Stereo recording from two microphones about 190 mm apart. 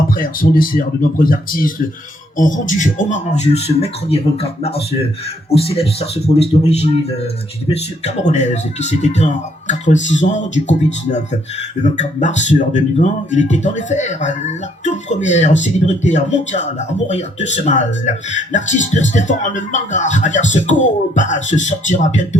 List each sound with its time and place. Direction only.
0.1 s speech: 50° left (ahead or behind)